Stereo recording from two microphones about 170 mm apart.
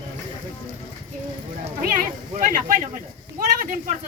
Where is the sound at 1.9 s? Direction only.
50° right (ahead or behind).